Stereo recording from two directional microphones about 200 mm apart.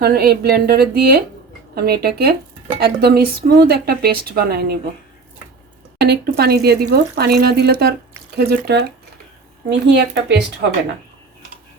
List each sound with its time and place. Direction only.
0.0 s speech: 50° right (ahead or behind)
6.0 s speech: 55° right (ahead or behind)